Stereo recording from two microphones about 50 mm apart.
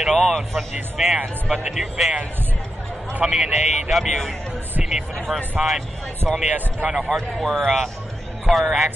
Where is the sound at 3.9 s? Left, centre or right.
Centre.